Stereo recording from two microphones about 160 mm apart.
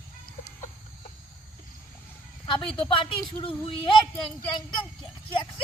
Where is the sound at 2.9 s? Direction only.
30° left (ahead or behind).